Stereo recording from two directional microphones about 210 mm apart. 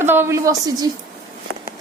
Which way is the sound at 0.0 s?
10° right (ahead or behind).